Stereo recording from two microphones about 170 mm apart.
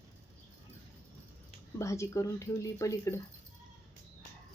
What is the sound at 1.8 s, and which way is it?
Speech, 15° left (ahead or behind).